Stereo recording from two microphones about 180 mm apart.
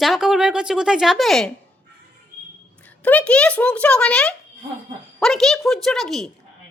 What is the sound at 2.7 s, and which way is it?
A child's voice, 10° left (ahead or behind).